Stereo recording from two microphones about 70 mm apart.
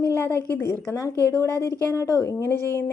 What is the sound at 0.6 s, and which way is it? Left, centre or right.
Speech, left.